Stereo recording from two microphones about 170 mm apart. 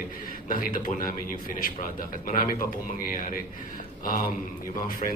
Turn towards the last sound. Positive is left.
turn(degrees=55)  # may be behind; listen again after turning